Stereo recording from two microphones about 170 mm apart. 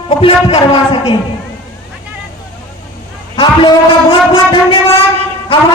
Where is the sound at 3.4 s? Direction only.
30° left (ahead or behind).